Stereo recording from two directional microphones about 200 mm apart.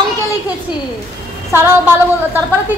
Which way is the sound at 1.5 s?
10° right (ahead or behind).